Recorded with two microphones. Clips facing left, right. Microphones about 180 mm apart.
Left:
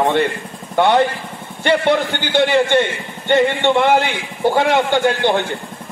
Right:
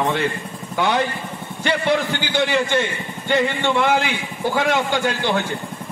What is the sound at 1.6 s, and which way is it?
A man's voice, 60° left (ahead or behind).